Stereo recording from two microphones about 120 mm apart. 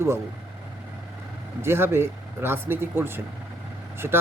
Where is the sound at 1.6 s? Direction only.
20° right (ahead or behind).